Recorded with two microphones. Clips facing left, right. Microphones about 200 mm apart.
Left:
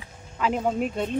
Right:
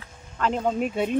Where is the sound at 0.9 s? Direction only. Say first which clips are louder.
Right 3 dB; 5° right (ahead or behind).